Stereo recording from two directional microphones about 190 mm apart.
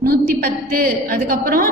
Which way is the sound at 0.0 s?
50° right (ahead or behind).